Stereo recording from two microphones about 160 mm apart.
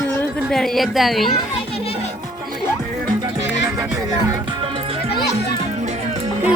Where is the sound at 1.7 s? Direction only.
40° left (ahead or behind).